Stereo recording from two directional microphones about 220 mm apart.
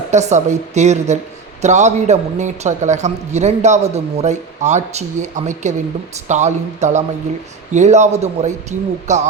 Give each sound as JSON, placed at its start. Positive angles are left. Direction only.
{"t": 0.1, "sound": "a man's voice", "side_deg": -30}